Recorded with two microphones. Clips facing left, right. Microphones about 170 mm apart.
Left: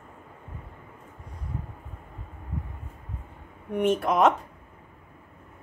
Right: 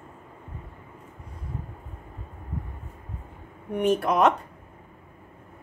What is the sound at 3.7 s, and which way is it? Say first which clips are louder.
Speech: right 1 dB; centre (ahead or behind).